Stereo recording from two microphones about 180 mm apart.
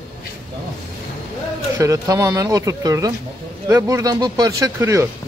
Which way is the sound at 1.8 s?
20° right (ahead or behind).